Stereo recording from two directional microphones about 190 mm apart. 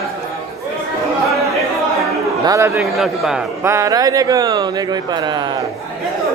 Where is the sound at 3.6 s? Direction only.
15° right (ahead or behind).